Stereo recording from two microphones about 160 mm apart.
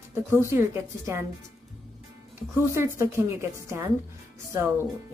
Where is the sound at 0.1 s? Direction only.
15° right (ahead or behind).